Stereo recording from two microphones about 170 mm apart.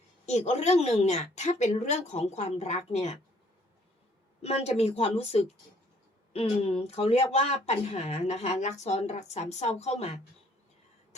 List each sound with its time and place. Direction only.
0.3 s speech: 40° left (ahead or behind)
4.4 s speech: 40° left (ahead or behind)